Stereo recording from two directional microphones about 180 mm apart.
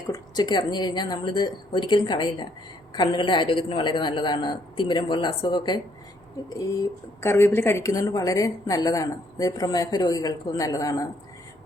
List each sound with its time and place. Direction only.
0.1 s a woman's voice: 25° left (ahead or behind)